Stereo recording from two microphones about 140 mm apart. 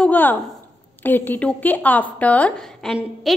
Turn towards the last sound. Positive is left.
turn(degrees=0)  # may be behind; listen again after turning